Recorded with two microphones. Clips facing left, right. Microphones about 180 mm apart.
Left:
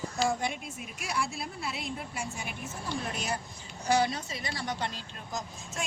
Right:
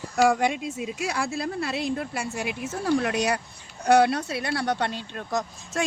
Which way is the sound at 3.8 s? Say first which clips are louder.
Right 8 dB; 65° right (ahead or behind).